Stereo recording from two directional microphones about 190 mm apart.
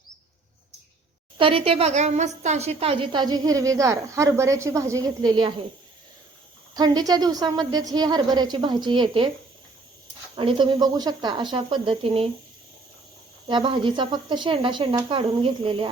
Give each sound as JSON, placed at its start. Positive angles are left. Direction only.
{"t": 1.4, "sound": "a woman's voice", "side_deg": -30}
{"t": 6.7, "sound": "a woman's voice", "side_deg": -20}
{"t": 10.3, "sound": "a woman's voice", "side_deg": -25}
{"t": 13.5, "sound": "a woman's voice", "side_deg": -25}